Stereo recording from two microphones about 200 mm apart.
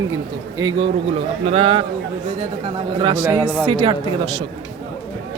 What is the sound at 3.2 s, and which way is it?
Speech, 15° right (ahead or behind).